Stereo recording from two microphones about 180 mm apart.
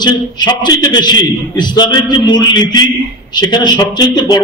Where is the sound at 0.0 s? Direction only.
25° left (ahead or behind).